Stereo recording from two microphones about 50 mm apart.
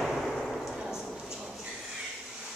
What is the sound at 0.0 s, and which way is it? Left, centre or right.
Fireworks, centre.